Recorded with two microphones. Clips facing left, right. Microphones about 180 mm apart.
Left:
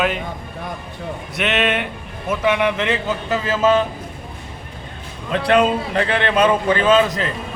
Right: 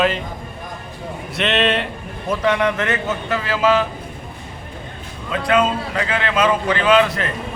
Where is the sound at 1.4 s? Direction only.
5° left (ahead or behind).